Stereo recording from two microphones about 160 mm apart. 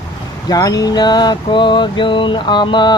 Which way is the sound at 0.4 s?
25° left (ahead or behind).